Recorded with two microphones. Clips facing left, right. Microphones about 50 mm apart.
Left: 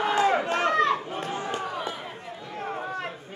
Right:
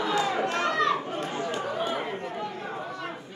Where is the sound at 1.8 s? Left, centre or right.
Right.